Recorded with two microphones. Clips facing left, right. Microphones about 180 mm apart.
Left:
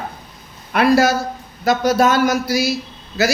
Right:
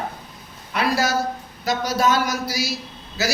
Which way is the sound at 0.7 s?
55° left (ahead or behind).